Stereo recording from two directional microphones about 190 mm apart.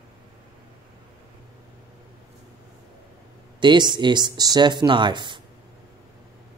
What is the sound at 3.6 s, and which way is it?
Speech, 25° right (ahead or behind).